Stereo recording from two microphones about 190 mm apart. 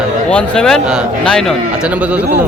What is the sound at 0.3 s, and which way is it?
A man's voice, 5° left (ahead or behind).